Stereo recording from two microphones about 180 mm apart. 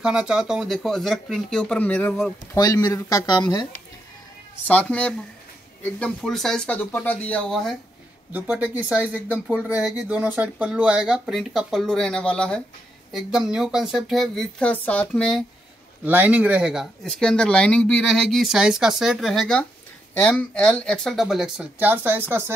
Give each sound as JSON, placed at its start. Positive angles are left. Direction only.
{"t": 0.0, "sound": "speech", "side_deg": -5}
{"t": 2.5, "sound": "speech", "side_deg": 20}
{"t": 4.6, "sound": "speech", "side_deg": 5}
{"t": 8.3, "sound": "speech", "side_deg": -10}
{"t": 16.0, "sound": "speech", "side_deg": -10}